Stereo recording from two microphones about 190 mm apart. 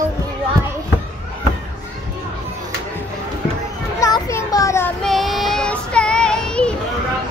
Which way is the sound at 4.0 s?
15° left (ahead or behind).